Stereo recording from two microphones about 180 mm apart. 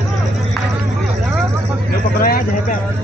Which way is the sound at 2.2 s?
50° left (ahead or behind).